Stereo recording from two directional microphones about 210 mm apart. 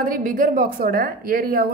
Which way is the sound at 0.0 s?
40° right (ahead or behind).